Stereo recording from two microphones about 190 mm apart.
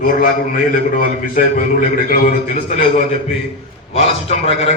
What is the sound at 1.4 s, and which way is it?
Speech, 45° left (ahead or behind).